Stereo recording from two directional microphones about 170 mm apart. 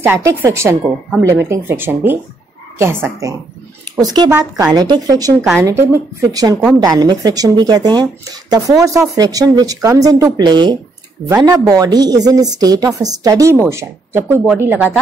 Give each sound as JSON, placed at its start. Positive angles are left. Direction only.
{"t": 0.0, "sound": "speech", "side_deg": -15}